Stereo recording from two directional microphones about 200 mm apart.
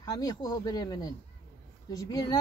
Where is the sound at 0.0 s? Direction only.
20° left (ahead or behind).